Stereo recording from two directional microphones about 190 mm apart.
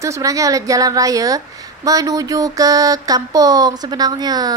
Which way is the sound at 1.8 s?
20° right (ahead or behind).